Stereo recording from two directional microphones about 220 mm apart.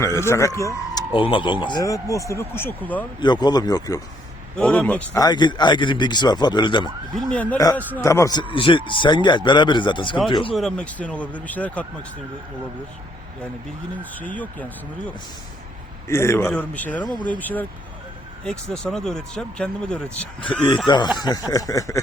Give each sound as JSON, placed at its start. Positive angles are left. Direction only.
{"t": 0.0, "sound": "speech", "side_deg": 15}
{"t": 3.2, "sound": "speech", "side_deg": 20}
{"t": 4.5, "sound": "speech", "side_deg": 5}
{"t": 5.2, "sound": "speech", "side_deg": 20}
{"t": 7.2, "sound": "speech", "side_deg": 5}
{"t": 10.5, "sound": "speech", "side_deg": 0}
{"t": 14.0, "sound": "speech", "side_deg": 5}
{"t": 16.0, "sound": "speech", "side_deg": 10}
{"t": 20.8, "sound": "speech", "side_deg": 20}